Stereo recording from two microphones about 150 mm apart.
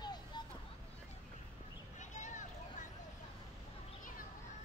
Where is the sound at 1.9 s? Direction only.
55° left (ahead or behind).